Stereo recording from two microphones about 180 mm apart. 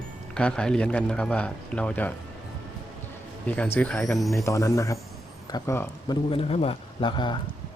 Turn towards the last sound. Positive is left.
turn(degrees=25)  # may be behind; listen again after turning